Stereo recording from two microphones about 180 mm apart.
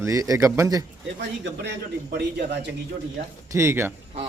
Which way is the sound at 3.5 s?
15° right (ahead or behind).